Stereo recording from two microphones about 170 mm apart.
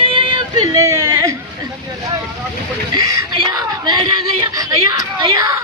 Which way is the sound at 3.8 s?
25° right (ahead or behind).